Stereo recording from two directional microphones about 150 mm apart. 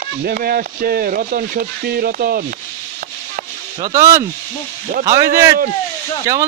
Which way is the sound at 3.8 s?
20° right (ahead or behind).